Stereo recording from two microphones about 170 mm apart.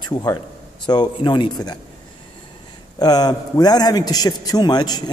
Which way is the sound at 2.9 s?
25° left (ahead or behind).